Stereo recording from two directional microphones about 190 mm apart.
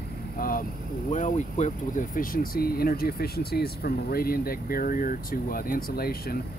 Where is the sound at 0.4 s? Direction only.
50° left (ahead or behind).